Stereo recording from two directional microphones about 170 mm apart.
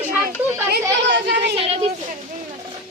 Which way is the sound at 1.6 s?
35° right (ahead or behind).